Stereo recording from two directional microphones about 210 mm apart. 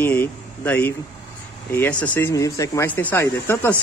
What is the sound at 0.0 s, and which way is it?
Speech, 10° left (ahead or behind).